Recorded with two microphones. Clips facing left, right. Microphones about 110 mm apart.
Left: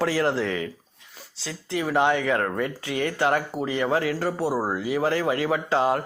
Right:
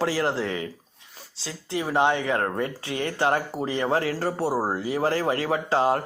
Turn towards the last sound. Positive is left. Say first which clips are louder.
# even
turn(degrees=-35)  # may be behind; listen again after turning